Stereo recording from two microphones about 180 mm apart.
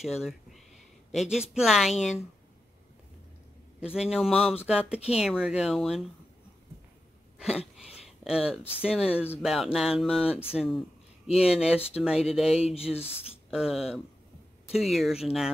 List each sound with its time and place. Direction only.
0.0 s speech: centre (ahead or behind)
3.9 s speech: 5° right (ahead or behind)
7.3 s a sound: 5° right (ahead or behind)
8.2 s speech: 5° right (ahead or behind)
12.6 s speech: 35° left (ahead or behind)
13.5 s speech: 5° right (ahead or behind)